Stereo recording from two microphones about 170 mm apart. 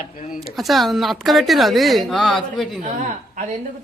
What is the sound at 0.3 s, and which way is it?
Speech, centre (ahead or behind).